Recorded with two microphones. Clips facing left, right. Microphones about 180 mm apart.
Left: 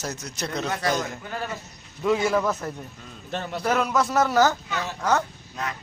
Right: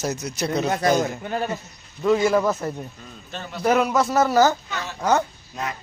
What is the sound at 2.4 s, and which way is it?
A man's voice, 10° right (ahead or behind).